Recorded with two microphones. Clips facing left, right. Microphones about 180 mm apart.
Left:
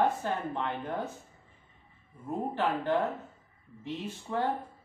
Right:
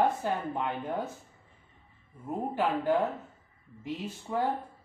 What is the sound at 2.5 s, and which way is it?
Speech, 10° right (ahead or behind).